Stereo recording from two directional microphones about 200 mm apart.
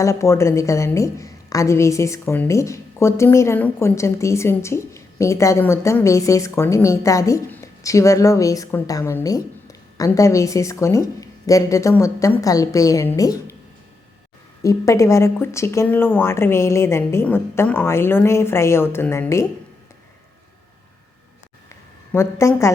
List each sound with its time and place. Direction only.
0.0 s a woman's voice: 15° left (ahead or behind)
14.6 s a woman's voice: 15° left (ahead or behind)
21.7 s a sound: 15° left (ahead or behind)